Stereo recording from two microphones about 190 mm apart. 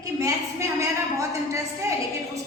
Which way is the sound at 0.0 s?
15° right (ahead or behind).